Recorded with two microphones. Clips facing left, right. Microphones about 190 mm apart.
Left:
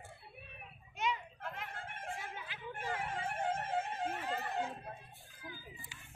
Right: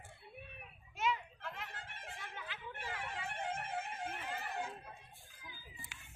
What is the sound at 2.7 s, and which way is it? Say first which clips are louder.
Music: left 6 dB; 45° left (ahead or behind).